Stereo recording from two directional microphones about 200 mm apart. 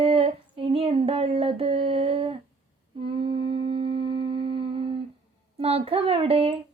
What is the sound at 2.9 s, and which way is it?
Music, 25° right (ahead or behind).